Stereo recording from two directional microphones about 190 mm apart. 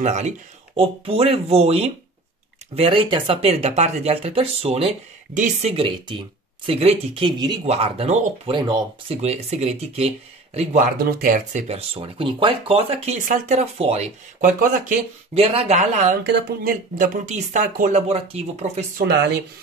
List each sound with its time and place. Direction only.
0.0 s speech: 40° right (ahead or behind)
11.0 s speech: 50° right (ahead or behind)
15.3 s speech: 30° right (ahead or behind)
16.3 s speech: 60° right (ahead or behind); by 19.0 s 35° right (ahead or behind)